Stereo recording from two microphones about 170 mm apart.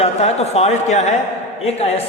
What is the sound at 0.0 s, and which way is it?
Speech, 40° left (ahead or behind).